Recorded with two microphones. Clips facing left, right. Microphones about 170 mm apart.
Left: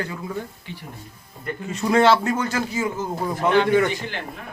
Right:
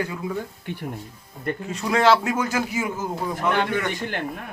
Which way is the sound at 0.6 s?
55° right (ahead or behind).